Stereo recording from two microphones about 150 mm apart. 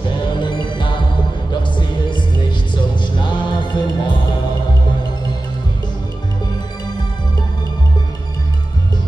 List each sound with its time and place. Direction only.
0.2 s music: 30° left (ahead or behind)